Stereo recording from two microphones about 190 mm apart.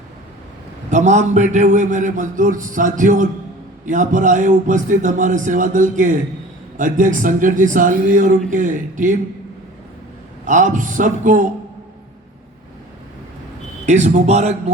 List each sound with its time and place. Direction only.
0.9 s a man's voice: 40° right (ahead or behind)
10.4 s speech: 40° right (ahead or behind)
13.8 s a man's voice: 35° right (ahead or behind)